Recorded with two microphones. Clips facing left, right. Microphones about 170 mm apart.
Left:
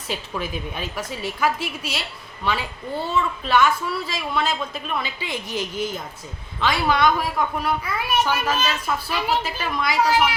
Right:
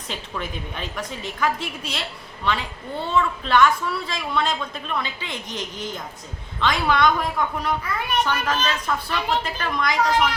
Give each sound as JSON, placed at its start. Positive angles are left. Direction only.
{"t": 0.1, "sound": "a child's voice", "side_deg": 5}